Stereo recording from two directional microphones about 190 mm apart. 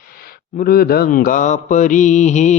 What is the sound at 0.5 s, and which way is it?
Mantra, 50° left (ahead or behind).